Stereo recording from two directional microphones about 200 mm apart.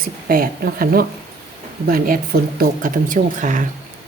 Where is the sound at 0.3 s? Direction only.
45° right (ahead or behind).